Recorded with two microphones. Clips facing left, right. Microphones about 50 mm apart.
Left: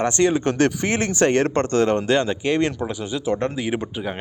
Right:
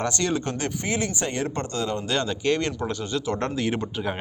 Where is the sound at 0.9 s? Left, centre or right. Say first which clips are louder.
Left 7 dB; left.